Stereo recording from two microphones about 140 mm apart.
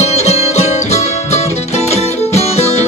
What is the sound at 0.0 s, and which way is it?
Music, 50° left (ahead or behind).